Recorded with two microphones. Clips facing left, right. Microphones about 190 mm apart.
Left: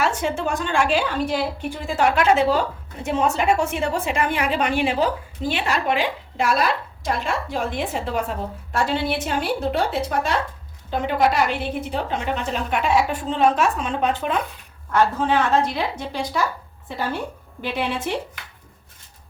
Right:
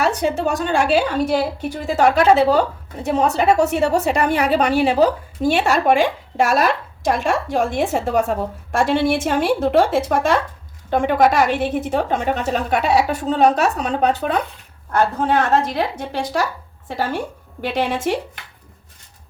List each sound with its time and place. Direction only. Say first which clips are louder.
0.0 s a woman's voice: right 4 dB; 40° right (ahead or behind)
17.7 s a woman's voice: right 4 dB; 90° right